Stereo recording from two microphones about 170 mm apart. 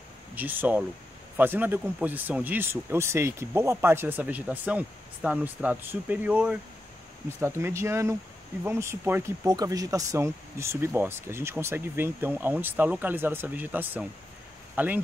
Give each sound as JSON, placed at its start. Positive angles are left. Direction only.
{"t": 0.4, "sound": "speech", "side_deg": -10}